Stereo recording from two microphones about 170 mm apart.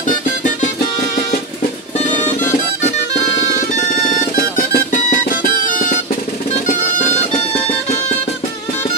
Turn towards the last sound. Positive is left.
turn(degrees=40)  # may be behind; listen again after turning